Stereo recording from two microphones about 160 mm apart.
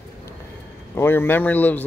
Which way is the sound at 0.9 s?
15° left (ahead or behind).